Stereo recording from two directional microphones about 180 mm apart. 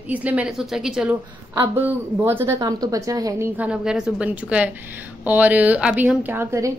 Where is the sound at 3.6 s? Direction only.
5° right (ahead or behind).